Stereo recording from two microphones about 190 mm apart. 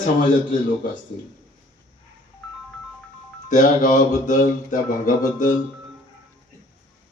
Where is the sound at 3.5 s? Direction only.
40° left (ahead or behind).